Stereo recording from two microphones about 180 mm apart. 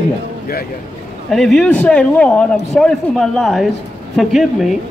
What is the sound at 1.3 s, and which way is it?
A man's voice, centre (ahead or behind).